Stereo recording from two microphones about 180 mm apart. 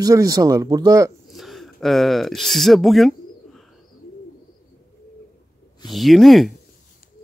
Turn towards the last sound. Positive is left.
turn(degrees=0)  # may be behind; listen again after turning